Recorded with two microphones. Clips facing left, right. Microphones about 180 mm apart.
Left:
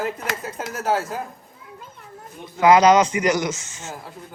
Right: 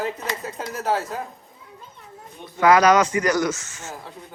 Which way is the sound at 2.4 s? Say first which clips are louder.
Left 2 dB; 20° left (ahead or behind).